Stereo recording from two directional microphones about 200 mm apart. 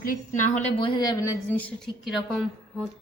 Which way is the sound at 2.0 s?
Centre (ahead or behind).